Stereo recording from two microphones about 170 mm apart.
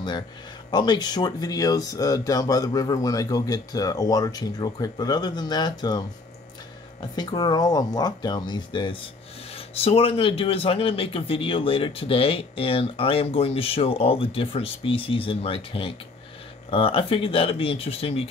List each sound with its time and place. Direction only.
0.7 s speech: 25° left (ahead or behind)
7.2 s a man's voice: 25° left (ahead or behind)